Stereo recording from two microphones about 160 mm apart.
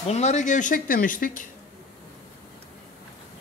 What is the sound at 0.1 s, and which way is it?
A woman's voice, 45° left (ahead or behind).